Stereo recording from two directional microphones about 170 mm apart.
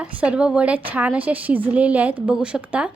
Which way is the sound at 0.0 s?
5° right (ahead or behind).